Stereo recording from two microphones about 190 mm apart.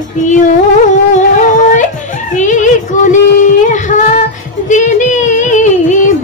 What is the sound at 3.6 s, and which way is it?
Child singing, 40° left (ahead or behind).